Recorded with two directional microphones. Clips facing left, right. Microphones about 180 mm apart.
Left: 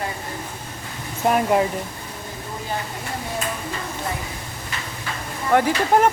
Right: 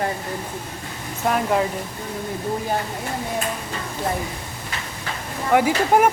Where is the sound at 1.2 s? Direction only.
10° left (ahead or behind).